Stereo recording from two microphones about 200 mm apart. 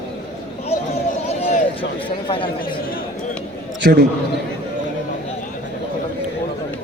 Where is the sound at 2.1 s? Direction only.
25° left (ahead or behind).